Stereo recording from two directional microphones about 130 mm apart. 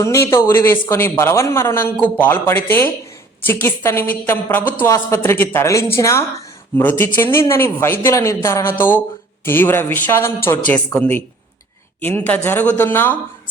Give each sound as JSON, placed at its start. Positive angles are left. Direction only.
{"t": 0.0, "sound": "a man's voice", "side_deg": 20}